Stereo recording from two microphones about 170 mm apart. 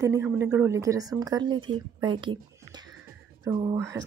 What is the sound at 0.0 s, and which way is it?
Speech, 15° right (ahead or behind).